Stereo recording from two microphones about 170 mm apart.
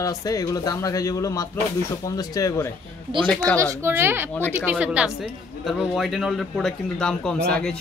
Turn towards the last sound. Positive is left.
turn(degrees=5)  # may be behind; listen again after turning